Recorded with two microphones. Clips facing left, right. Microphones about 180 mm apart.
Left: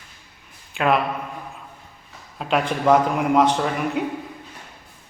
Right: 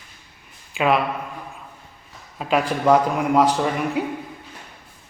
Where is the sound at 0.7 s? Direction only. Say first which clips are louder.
Right 1 dB; centre (ahead or behind).